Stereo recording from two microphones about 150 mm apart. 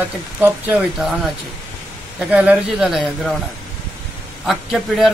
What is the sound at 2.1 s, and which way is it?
Speech, 5° right (ahead or behind).